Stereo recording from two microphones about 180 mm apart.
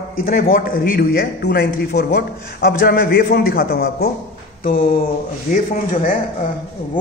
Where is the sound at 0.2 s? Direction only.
55° left (ahead or behind).